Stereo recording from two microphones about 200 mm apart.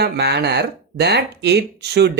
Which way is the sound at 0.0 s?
55° right (ahead or behind).